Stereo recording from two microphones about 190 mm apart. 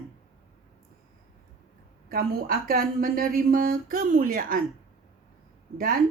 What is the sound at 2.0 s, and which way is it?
A woman's voice, 50° right (ahead or behind).